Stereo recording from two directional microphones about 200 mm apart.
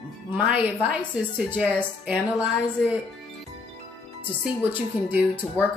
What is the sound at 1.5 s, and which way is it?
Speech, 5° right (ahead or behind).